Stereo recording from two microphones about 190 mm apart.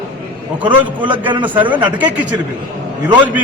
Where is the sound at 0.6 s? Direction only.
25° right (ahead or behind).